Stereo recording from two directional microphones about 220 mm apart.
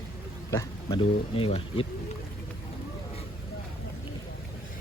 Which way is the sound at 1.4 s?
25° left (ahead or behind).